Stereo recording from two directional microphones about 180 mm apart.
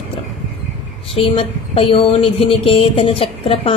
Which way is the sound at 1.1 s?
30° left (ahead or behind).